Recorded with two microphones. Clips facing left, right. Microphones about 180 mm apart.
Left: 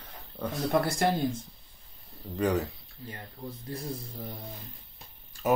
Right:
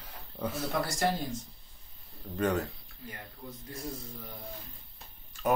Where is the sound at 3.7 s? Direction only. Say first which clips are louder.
Left 3 dB; 35° left (ahead or behind).